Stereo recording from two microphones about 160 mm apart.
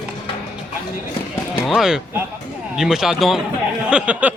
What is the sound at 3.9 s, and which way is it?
Speech, 10° right (ahead or behind).